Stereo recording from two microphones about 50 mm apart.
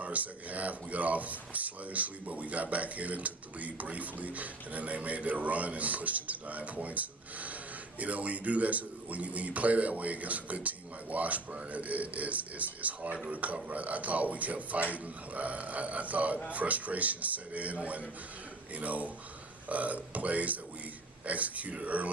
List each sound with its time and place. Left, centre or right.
0.0 s a man's voice: right